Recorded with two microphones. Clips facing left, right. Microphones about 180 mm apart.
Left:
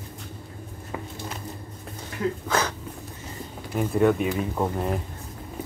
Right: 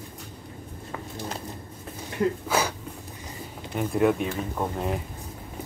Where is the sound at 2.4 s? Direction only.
10° right (ahead or behind).